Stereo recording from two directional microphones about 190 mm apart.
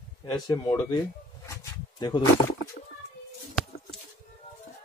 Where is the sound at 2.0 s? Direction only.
20° left (ahead or behind).